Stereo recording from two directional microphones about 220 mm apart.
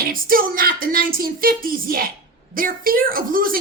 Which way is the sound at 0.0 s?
40° right (ahead or behind).